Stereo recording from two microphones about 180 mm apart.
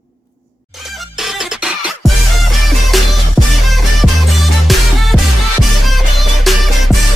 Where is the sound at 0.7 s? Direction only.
Centre (ahead or behind).